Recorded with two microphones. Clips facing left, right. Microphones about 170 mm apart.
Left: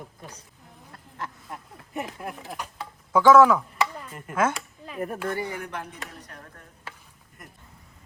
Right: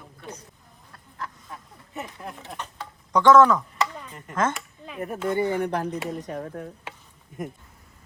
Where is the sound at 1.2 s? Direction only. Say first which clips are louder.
Left 1 dB; 20° left (ahead or behind).